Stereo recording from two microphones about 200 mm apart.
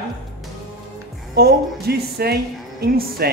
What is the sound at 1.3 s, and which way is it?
A woman's voice, 55° right (ahead or behind).